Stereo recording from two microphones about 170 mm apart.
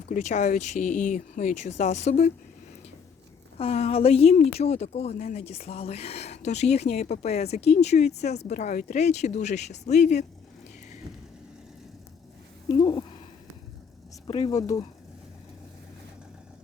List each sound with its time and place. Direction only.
0.1 s speech: 45° left (ahead or behind)
3.6 s speech: 40° left (ahead or behind)
12.7 s speech: 25° left (ahead or behind)
14.3 s speech: 30° left (ahead or behind)
14.5 s speech: 20° left (ahead or behind)